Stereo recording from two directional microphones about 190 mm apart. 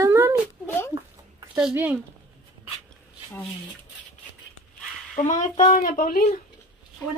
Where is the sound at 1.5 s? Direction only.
5° right (ahead or behind).